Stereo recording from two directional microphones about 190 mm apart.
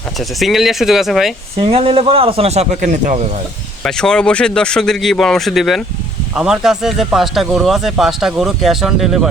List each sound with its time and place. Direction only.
0.2 s speech: centre (ahead or behind)
1.5 s a man's voice: 30° right (ahead or behind)
3.8 s speech: 5° left (ahead or behind)